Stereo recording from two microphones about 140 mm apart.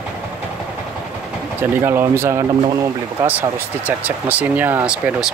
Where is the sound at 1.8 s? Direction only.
20° right (ahead or behind).